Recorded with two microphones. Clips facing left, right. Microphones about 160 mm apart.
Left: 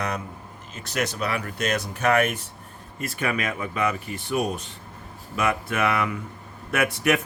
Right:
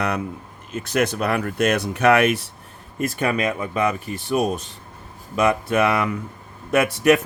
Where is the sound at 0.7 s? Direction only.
55° right (ahead or behind); by 2.4 s 75° right (ahead or behind).